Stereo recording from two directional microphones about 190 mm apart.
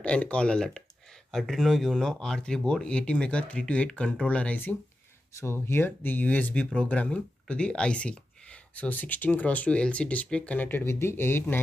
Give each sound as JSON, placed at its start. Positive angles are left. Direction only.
{"t": 0.0, "sound": "speech", "side_deg": 5}